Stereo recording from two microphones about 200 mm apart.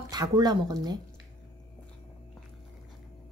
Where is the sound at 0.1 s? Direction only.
20° right (ahead or behind).